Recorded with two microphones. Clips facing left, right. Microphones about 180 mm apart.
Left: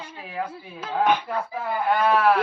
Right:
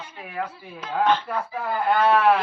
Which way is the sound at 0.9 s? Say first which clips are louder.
Even; 15° left (ahead or behind).